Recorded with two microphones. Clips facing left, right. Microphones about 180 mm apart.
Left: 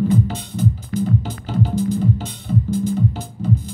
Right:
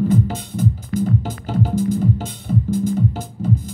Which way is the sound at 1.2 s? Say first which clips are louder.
Right 1 dB; 45° right (ahead or behind).